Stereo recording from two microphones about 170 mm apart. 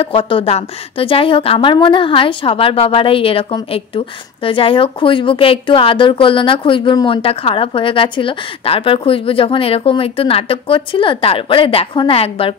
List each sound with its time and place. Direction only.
0.0 s a woman's voice: 30° left (ahead or behind)